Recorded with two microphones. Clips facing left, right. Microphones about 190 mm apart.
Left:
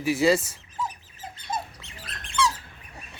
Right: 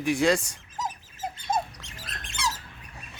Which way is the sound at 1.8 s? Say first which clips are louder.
Even; 90° right.